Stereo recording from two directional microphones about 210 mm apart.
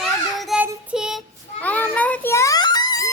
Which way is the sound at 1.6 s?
5° left (ahead or behind).